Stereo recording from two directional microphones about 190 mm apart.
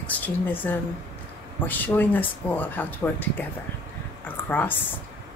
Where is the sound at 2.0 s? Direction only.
10° left (ahead or behind).